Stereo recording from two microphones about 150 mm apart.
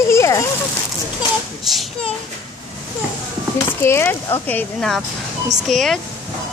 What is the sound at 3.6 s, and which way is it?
Speech, 15° left (ahead or behind).